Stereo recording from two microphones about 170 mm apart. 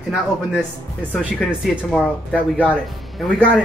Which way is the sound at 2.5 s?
10° right (ahead or behind).